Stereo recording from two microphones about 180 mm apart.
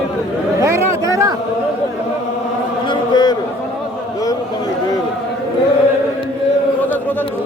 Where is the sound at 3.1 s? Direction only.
25° left (ahead or behind).